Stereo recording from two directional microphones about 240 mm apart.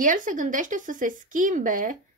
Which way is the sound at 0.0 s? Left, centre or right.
Right.